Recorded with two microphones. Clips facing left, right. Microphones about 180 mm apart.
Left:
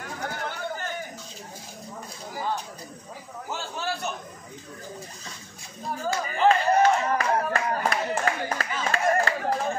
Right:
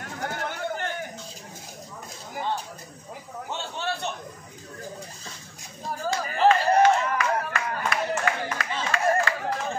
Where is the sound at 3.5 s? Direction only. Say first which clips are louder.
Even; 25° right (ahead or behind).